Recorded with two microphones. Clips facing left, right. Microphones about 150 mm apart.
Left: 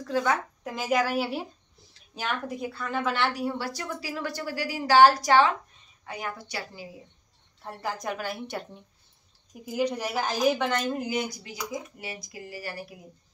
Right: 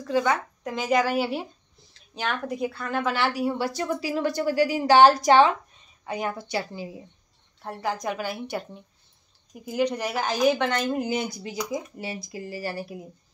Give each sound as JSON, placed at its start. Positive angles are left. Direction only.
{"t": 0.0, "sound": "speech", "side_deg": 0}
{"t": 7.6, "sound": "speech", "side_deg": 0}
{"t": 9.7, "sound": "speech", "side_deg": 5}
{"t": 11.0, "sound": "speech", "side_deg": -25}